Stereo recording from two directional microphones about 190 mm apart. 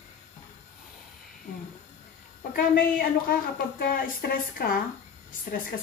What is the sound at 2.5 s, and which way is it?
Speech, 50° left (ahead or behind).